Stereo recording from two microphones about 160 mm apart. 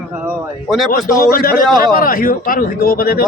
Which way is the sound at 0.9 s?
70° left (ahead or behind).